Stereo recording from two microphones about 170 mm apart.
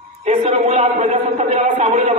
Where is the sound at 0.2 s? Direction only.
40° right (ahead or behind).